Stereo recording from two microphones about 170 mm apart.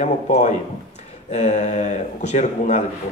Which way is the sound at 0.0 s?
45° left (ahead or behind).